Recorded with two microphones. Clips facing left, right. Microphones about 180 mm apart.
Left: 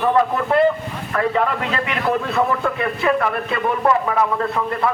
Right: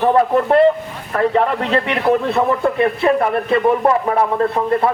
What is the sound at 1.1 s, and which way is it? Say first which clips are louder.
Speech: right 4 dB; 35° right (ahead or behind).